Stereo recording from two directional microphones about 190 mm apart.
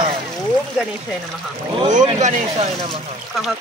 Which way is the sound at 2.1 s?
40° right (ahead or behind).